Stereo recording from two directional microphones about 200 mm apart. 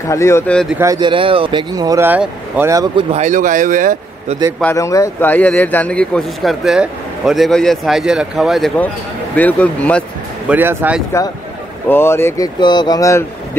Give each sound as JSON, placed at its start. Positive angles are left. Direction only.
{"t": 0.1, "sound": "speech", "side_deg": 15}
{"t": 0.7, "sound": "speech", "side_deg": -20}
{"t": 3.1, "sound": "speech", "side_deg": -35}
{"t": 4.6, "sound": "speech", "side_deg": 10}
{"t": 10.5, "sound": "speech", "side_deg": -10}
{"t": 11.9, "sound": "speech", "side_deg": 10}